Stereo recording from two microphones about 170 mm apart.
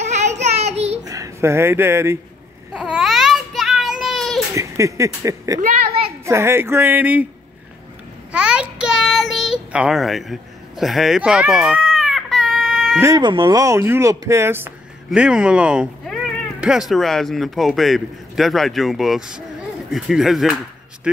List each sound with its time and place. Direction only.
0.0 s child singing: 40° right (ahead or behind)
1.0 s speech: 20° right (ahead or behind)
2.7 s babbling: 5° right (ahead or behind)
4.6 s speech: 20° right (ahead or behind)
5.6 s a sound: 40° right (ahead or behind)
6.2 s speech: 15° right (ahead or behind)
8.3 s child singing: 5° right (ahead or behind)
13.0 s a man's voice: 25° right (ahead or behind); by 21.1 s 5° right (ahead or behind)